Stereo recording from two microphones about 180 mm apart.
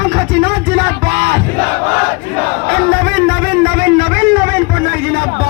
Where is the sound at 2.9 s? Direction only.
60° right (ahead or behind).